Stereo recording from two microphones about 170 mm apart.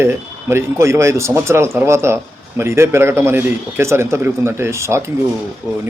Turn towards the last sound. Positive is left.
turn(degrees=-15)  # may be behind; listen again after turning